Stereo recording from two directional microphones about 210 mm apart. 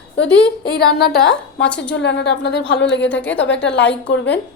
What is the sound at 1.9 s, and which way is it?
A woman's voice, 55° left (ahead or behind).